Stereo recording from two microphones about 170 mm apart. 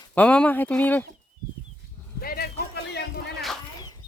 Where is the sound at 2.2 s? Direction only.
60° left (ahead or behind); by 3.2 s 80° left.